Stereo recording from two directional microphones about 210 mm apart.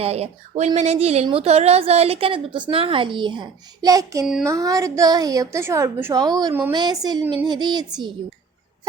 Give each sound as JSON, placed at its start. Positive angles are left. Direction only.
{"t": 0.0, "sound": "a woman's voice", "side_deg": -30}